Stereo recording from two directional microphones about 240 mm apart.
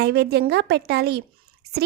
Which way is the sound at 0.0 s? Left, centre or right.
Right.